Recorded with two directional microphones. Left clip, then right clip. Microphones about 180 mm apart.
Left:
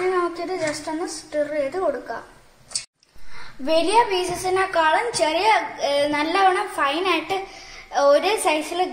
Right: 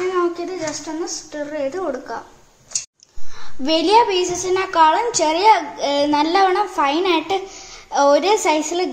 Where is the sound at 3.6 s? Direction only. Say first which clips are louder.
Right 4 dB; 55° right (ahead or behind).